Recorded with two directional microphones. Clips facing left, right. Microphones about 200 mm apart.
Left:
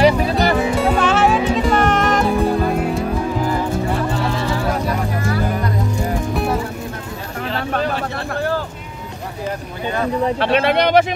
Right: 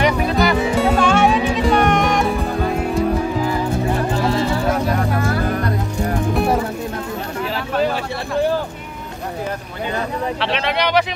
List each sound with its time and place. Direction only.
0.0 s music: 35° left (ahead or behind)
0.7 s music: centre (ahead or behind)
10.4 s speech: 50° left (ahead or behind)